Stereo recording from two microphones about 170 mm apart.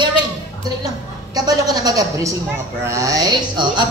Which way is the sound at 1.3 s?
20° right (ahead or behind).